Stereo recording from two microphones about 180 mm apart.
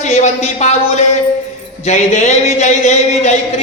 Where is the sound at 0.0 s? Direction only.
40° left (ahead or behind).